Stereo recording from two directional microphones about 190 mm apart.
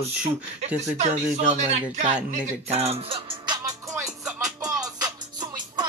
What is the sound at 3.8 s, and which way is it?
Music, centre (ahead or behind).